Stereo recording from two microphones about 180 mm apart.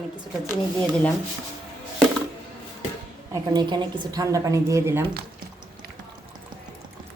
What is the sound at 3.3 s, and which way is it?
A woman's voice, 25° right (ahead or behind).